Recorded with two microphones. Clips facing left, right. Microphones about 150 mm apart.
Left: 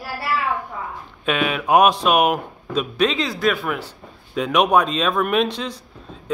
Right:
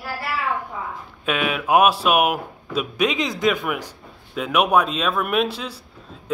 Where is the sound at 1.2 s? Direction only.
5° right (ahead or behind).